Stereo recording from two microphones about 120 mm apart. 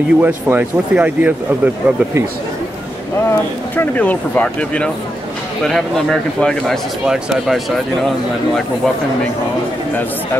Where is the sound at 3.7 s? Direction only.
15° left (ahead or behind).